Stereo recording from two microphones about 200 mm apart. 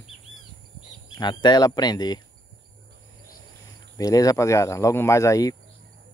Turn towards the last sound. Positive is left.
turn(degrees=15)  # may be behind; listen again after turning